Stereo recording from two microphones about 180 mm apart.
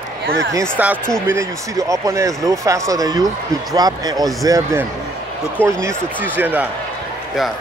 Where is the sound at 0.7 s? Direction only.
10° right (ahead or behind).